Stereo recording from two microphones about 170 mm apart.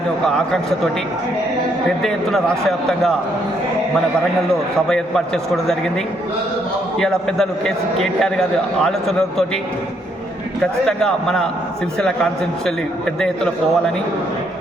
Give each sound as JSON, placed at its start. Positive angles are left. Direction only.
{"t": 0.3, "sound": "a man's voice", "side_deg": 5}
{"t": 2.0, "sound": "a man's voice", "side_deg": 5}
{"t": 4.9, "sound": "a man's voice", "side_deg": 5}
{"t": 7.0, "sound": "a man's voice", "side_deg": 5}
{"t": 10.8, "sound": "a man's voice", "side_deg": 5}